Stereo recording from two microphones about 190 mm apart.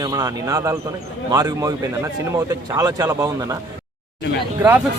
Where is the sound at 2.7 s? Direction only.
15° right (ahead or behind).